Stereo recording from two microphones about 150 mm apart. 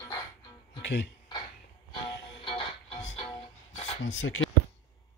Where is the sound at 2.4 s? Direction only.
35° left (ahead or behind).